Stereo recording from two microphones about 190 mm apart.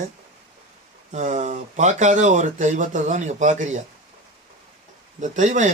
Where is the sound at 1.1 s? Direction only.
40° right (ahead or behind).